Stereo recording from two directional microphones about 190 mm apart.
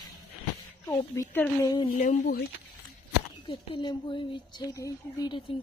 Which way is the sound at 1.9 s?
45° left (ahead or behind).